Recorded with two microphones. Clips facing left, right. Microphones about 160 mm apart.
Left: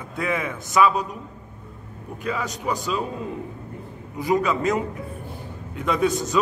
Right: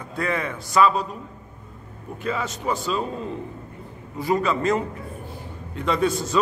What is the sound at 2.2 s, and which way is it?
Speech, centre (ahead or behind).